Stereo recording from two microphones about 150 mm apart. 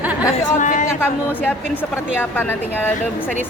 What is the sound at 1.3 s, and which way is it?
A woman's voice, 10° left (ahead or behind).